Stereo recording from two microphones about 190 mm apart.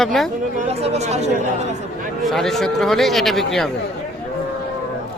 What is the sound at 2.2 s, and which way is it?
Speech, centre (ahead or behind).